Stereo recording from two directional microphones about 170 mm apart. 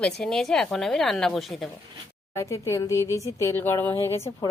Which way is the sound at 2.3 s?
15° left (ahead or behind).